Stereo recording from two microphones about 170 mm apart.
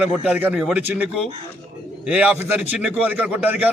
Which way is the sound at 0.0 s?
10° right (ahead or behind).